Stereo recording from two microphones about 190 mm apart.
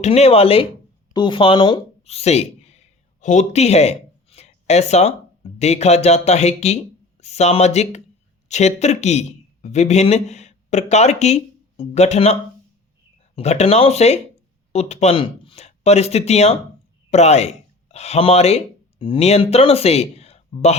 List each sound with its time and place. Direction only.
0.0 s speech: 30° left (ahead or behind)